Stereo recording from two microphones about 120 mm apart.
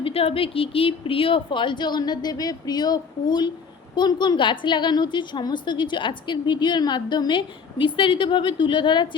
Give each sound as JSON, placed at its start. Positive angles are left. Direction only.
{"t": 0.0, "sound": "a woman's voice", "side_deg": 50}